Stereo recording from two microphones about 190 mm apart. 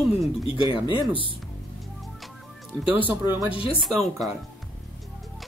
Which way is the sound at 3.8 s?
Centre (ahead or behind).